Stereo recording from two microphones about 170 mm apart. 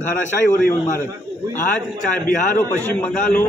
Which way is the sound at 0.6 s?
10° left (ahead or behind).